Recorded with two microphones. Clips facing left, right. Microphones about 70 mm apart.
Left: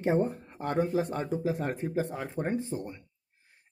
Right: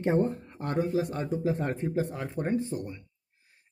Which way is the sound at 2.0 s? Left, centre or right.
Left.